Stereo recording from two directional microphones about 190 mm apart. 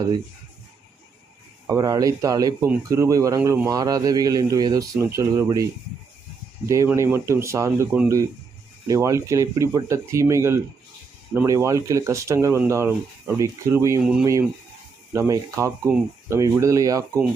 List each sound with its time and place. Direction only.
1.6 s speech: 15° right (ahead or behind)
6.7 s speech: 15° right (ahead or behind)
14.0 s speech: 5° right (ahead or behind)
15.1 s speech: 15° right (ahead or behind)